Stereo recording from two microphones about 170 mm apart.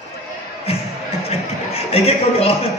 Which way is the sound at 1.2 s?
35° left (ahead or behind).